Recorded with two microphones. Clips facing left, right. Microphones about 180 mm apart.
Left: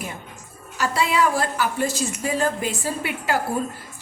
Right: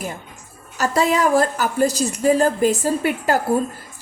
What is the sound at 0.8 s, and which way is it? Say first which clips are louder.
A woman's voice: right 3 dB; 40° right (ahead or behind).